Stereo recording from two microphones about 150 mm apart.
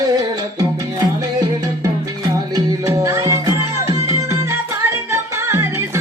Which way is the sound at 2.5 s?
20° right (ahead or behind).